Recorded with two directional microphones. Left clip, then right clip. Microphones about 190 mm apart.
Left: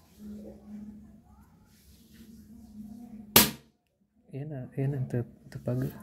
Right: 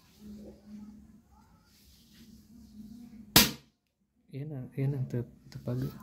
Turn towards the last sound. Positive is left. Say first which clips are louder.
# left 5 dB
turn(degrees=10)  # may be behind; listen again after turning